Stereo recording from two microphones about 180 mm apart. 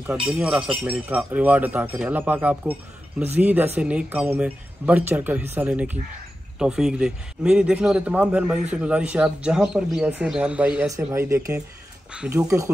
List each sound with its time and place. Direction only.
0.3 s a man's voice: 5° right (ahead or behind)
10.9 s speech: 15° right (ahead or behind)